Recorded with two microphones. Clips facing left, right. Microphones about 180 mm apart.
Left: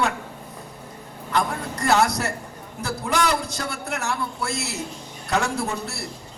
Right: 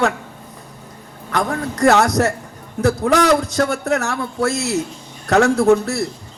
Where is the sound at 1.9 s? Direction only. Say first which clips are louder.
Right 6 dB; 90° right.